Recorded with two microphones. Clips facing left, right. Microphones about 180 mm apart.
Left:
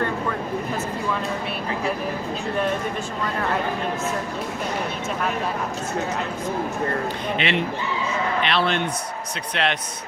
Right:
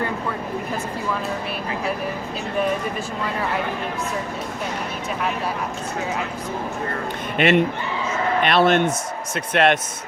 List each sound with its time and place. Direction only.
7.3 s speech: 50° right (ahead or behind)